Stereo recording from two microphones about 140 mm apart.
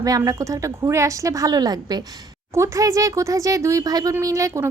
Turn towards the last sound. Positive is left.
turn(degrees=-20)  # may be behind; listen again after turning